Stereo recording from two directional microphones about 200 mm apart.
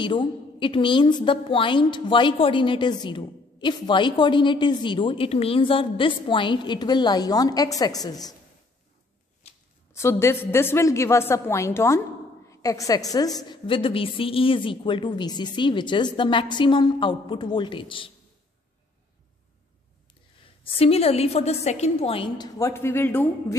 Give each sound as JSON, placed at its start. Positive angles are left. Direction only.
{"t": 0.0, "sound": "a woman's voice", "side_deg": 25}
{"t": 9.9, "sound": "a woman's voice", "side_deg": 15}
{"t": 20.6, "sound": "a woman's voice", "side_deg": 30}